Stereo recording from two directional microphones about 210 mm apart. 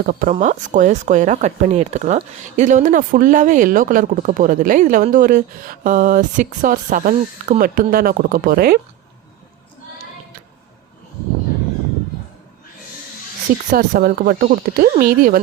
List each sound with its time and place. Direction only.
0.0 s speech: 45° right (ahead or behind)
13.7 s speech: 40° right (ahead or behind)